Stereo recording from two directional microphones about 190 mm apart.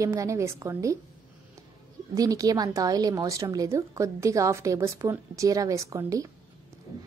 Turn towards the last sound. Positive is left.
turn(degrees=-15)  # may be behind; listen again after turning